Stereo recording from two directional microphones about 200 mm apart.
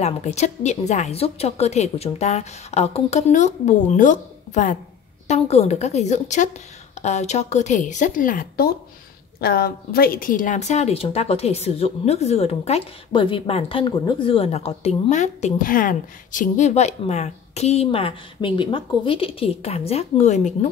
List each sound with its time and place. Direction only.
0.0 s a woman's voice: 35° left (ahead or behind)